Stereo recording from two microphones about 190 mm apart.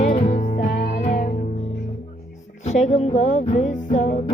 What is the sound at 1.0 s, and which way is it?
Music, 40° left (ahead or behind).